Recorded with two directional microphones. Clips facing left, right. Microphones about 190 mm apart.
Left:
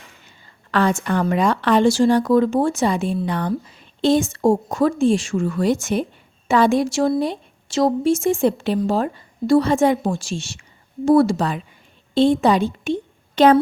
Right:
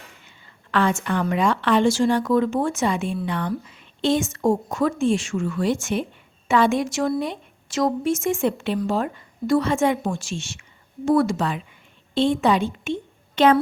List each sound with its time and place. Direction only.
0.3 s a woman's voice: 40° left (ahead or behind)